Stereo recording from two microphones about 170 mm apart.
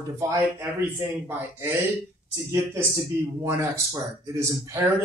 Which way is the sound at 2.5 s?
15° right (ahead or behind).